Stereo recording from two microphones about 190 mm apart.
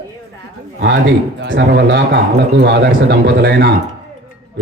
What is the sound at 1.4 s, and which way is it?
A man's voice, 65° right (ahead or behind).